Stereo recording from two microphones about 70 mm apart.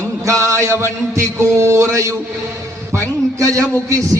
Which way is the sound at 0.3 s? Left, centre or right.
Right.